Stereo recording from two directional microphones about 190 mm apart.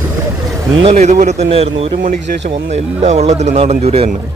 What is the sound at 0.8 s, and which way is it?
Speech, 35° right (ahead or behind).